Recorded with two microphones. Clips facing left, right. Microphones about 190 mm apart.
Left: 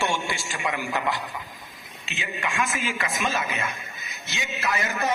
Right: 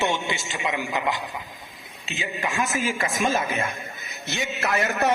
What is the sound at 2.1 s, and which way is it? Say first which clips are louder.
A man's voice: right 2 dB; 40° right (ahead or behind).